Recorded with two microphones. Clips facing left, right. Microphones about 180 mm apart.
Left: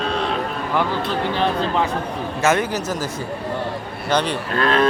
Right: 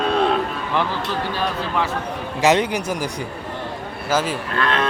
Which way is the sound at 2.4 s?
15° right (ahead or behind).